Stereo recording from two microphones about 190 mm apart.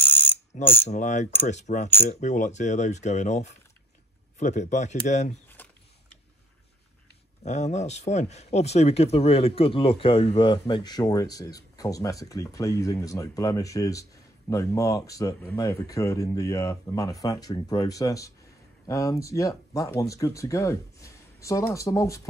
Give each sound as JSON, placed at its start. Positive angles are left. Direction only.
{"t": 0.0, "sound": "ratchet", "side_deg": 10}
{"t": 0.8, "sound": "mechanisms", "side_deg": 40}
{"t": 5.5, "sound": "a sound", "side_deg": 10}
{"t": 7.4, "sound": "speech", "side_deg": 40}